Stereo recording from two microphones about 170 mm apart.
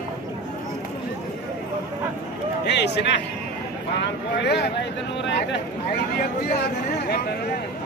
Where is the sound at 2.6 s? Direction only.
80° left.